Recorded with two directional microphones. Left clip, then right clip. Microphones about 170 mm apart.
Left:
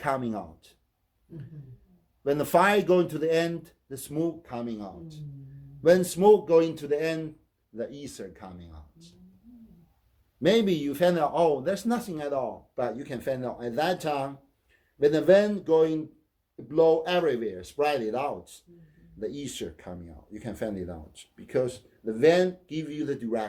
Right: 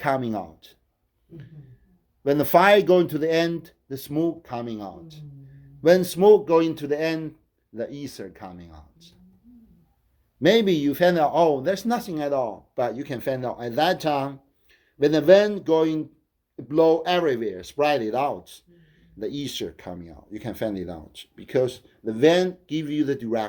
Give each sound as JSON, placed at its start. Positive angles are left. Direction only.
{"t": 0.0, "sound": "a man's voice", "side_deg": -30}
{"t": 2.2, "sound": "speech", "side_deg": -30}
{"t": 10.4, "sound": "speech", "side_deg": -30}